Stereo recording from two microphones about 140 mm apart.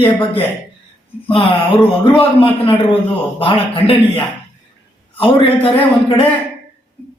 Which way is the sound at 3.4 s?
40° left (ahead or behind).